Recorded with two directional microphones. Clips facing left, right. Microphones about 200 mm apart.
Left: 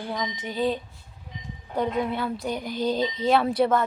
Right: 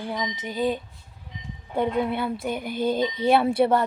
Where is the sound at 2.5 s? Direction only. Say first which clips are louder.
Right 1 dB; 55° right (ahead or behind).